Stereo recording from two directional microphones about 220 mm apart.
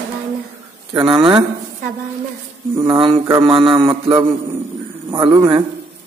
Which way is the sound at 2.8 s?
20° right (ahead or behind).